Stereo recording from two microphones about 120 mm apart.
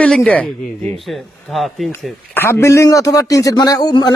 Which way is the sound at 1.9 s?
20° left (ahead or behind).